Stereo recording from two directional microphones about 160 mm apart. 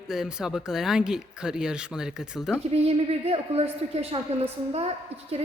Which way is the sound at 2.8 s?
40° right (ahead or behind).